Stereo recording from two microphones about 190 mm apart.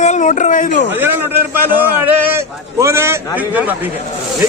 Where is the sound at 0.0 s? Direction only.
40° left (ahead or behind).